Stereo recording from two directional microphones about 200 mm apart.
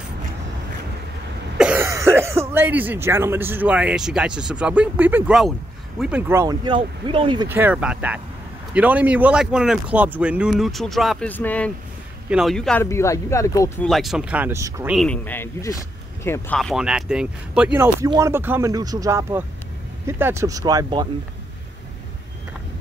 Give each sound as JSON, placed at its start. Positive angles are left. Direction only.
{"t": 1.6, "sound": "speech", "side_deg": -10}
{"t": 7.4, "sound": "speech", "side_deg": -10}
{"t": 12.8, "sound": "speech", "side_deg": 15}
{"t": 13.8, "sound": "speech", "side_deg": 0}
{"t": 15.0, "sound": "speech", "side_deg": 5}
{"t": 18.0, "sound": "speech", "side_deg": -15}